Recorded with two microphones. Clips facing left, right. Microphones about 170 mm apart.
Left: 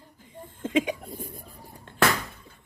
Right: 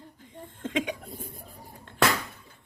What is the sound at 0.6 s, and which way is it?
Cough, 5° left (ahead or behind).